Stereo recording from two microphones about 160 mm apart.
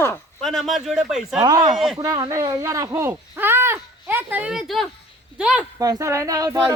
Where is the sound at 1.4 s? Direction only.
25° right (ahead or behind); by 5.6 s 5° right (ahead or behind).